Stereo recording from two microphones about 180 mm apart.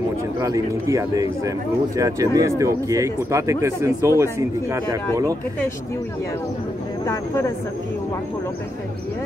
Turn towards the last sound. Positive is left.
turn(degrees=15)  # may be behind; listen again after turning